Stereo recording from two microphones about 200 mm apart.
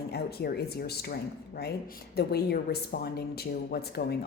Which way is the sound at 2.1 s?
50° left (ahead or behind).